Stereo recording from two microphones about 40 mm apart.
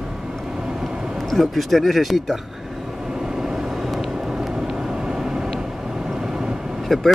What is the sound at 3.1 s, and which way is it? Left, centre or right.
Vehicle, centre.